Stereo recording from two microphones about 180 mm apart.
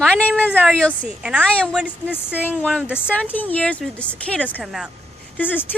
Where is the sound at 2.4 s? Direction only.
10° left (ahead or behind).